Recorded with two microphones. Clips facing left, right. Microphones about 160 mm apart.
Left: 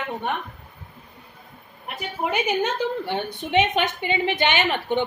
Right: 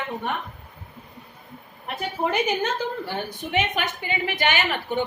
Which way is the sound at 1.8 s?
15° left (ahead or behind).